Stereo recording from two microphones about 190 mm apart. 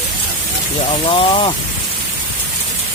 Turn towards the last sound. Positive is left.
turn(degrees=25)  # may be behind; listen again after turning